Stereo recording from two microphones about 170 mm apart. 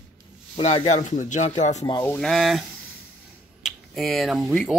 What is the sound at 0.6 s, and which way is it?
Speech, 40° left (ahead or behind).